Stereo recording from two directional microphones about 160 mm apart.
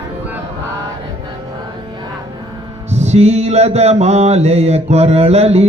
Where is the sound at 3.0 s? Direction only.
45° right (ahead or behind).